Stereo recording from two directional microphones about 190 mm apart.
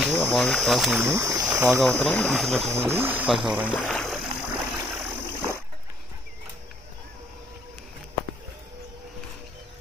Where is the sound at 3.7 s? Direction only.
10° left (ahead or behind).